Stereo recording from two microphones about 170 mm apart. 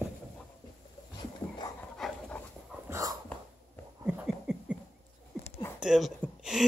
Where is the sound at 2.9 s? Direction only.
20° right (ahead or behind).